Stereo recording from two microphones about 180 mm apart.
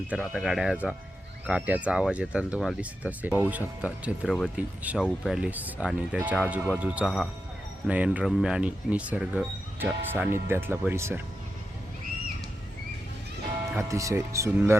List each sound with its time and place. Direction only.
0.1 s speech: 5° right (ahead or behind)
13.7 s speech: 15° right (ahead or behind)